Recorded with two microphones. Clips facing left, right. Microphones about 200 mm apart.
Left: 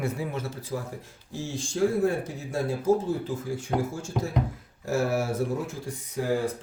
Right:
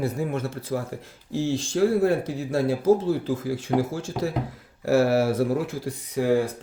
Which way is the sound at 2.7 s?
90° right.